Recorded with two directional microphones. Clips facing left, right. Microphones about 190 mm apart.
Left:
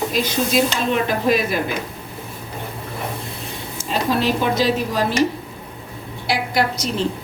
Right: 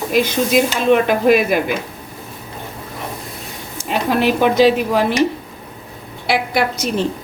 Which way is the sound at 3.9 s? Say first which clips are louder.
Right 3 dB; 60° right (ahead or behind).